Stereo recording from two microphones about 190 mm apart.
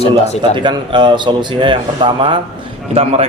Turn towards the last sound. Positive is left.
turn(degrees=-30)  # may be behind; listen again after turning